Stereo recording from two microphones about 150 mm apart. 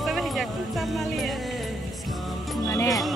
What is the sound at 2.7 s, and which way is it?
Music, 25° left (ahead or behind).